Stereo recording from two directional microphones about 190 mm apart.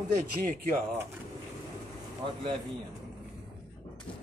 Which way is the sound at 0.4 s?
45° right (ahead or behind).